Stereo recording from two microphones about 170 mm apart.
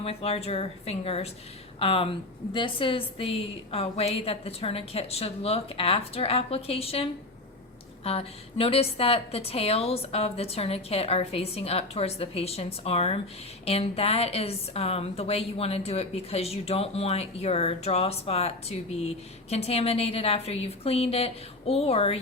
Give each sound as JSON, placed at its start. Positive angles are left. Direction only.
{"t": 0.0, "sound": "a woman's voice", "side_deg": 35}